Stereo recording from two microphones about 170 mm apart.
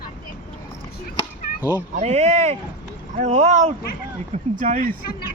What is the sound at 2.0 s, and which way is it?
Speech, 40° right (ahead or behind).